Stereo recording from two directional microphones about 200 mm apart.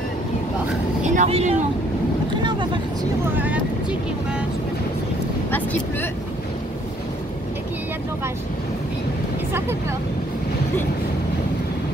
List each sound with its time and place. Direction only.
1.0 s speech: 35° right (ahead or behind)
3.3 s vehicle: 5° right (ahead or behind)
5.5 s speech: 10° left (ahead or behind)
9.5 s speech: 15° right (ahead or behind)